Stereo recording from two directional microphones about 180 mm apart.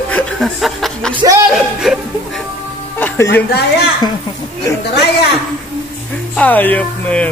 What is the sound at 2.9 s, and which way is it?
Music, 10° left (ahead or behind).